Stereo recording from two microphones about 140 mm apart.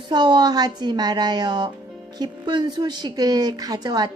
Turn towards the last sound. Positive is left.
turn(degrees=-30)  # may be behind; listen again after turning